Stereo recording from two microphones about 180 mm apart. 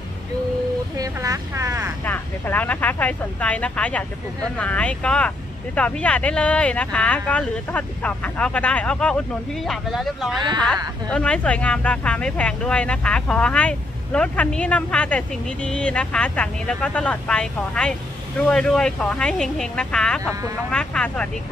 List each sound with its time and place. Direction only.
0.9 s vehicle: 20° right (ahead or behind)
2.0 s speech: 10° left (ahead or behind)